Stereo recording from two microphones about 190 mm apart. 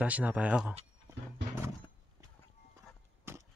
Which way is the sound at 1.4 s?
65° right (ahead or behind).